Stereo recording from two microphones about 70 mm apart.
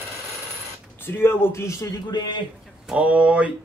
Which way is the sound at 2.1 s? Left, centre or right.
Left.